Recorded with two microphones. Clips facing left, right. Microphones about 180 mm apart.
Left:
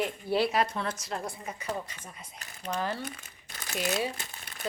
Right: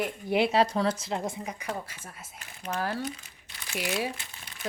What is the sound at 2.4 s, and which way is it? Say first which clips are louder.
Speech: even; 35° left (ahead or behind).